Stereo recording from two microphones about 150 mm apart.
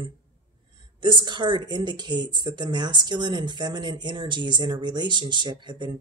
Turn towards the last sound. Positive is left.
turn(degrees=-30)  # may be behind; listen again after turning